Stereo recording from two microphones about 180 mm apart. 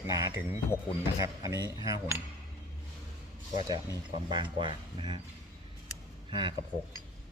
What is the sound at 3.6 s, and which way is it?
Speech, 25° right (ahead or behind).